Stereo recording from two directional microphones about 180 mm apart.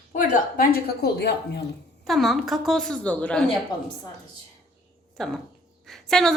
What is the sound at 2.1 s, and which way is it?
A woman's voice, centre (ahead or behind).